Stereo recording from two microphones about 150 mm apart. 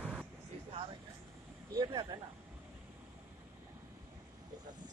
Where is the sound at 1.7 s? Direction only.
30° right (ahead or behind).